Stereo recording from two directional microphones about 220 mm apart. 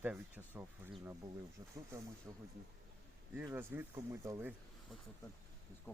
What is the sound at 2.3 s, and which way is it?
Speech, 15° right (ahead or behind).